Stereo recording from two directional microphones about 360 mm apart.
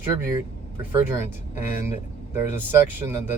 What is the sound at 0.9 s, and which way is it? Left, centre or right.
Speech, centre.